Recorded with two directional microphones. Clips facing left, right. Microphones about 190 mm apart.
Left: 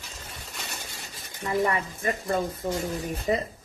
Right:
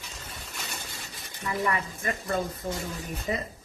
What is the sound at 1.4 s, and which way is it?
Speech, 30° left (ahead or behind).